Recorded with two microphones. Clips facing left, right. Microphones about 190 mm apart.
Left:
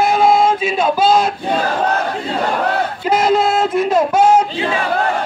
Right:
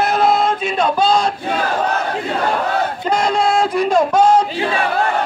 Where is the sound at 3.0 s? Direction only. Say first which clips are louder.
Left 4 dB; 5° left (ahead or behind).